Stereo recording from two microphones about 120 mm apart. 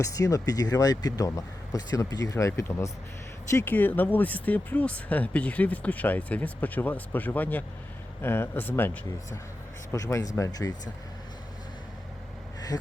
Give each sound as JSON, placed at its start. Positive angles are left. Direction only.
{"t": 0.0, "sound": "speech", "side_deg": 30}
{"t": 12.5, "sound": "gasp", "side_deg": 30}